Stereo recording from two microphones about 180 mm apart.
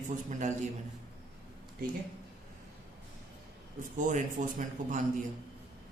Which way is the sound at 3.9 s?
45° right (ahead or behind).